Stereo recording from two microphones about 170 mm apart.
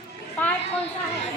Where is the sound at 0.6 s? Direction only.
35° left (ahead or behind).